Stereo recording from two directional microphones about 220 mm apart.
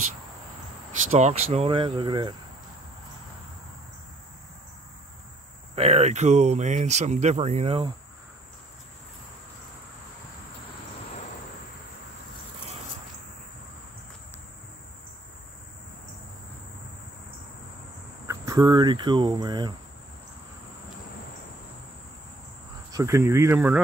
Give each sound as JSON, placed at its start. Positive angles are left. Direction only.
{"t": 1.1, "sound": "speech", "side_deg": -30}
{"t": 5.8, "sound": "speech", "side_deg": -30}
{"t": 18.2, "sound": "speech", "side_deg": -15}
{"t": 22.8, "sound": "speech", "side_deg": -15}